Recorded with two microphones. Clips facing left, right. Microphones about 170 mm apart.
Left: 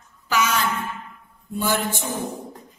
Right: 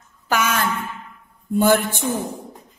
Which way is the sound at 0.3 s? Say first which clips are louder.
Right 1 dB; 55° right (ahead or behind).